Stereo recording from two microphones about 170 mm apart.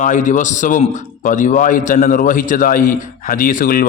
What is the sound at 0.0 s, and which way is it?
A man's voice, 45° left (ahead or behind).